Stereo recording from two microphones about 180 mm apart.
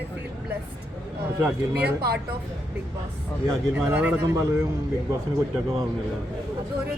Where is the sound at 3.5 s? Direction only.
10° right (ahead or behind).